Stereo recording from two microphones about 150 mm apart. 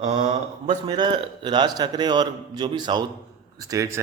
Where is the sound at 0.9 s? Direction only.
30° right (ahead or behind).